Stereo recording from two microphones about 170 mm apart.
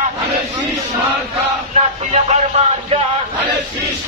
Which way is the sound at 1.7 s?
40° right (ahead or behind).